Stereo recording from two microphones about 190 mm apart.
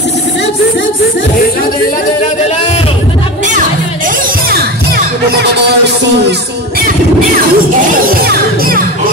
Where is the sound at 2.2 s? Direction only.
35° left (ahead or behind).